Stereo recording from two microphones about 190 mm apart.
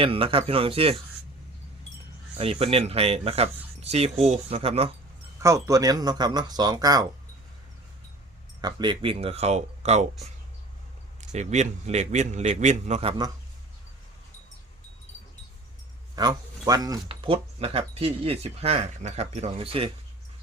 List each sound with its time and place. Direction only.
0.0 s speech: 30° right (ahead or behind)
2.4 s speech: 30° right (ahead or behind)
5.4 s speech: 15° right (ahead or behind)
8.6 s speech: 25° right (ahead or behind)
11.2 s speech: 40° right (ahead or behind)
16.1 s speech: 20° right (ahead or behind)